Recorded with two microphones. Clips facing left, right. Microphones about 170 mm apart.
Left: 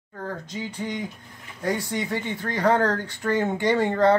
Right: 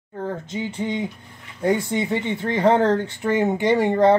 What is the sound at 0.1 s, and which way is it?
Speech, 25° right (ahead or behind).